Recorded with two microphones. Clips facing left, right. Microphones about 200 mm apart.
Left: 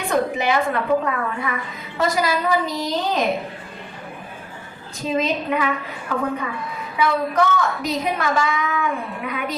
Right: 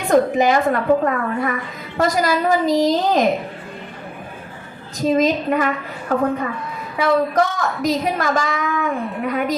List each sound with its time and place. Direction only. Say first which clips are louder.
0.1 s a woman's voice: right 6 dB; 45° right (ahead or behind)
2.6 s a woman's voice: right 10 dB; 90° right
5.0 s a woman's voice: right 5 dB; 45° right (ahead or behind)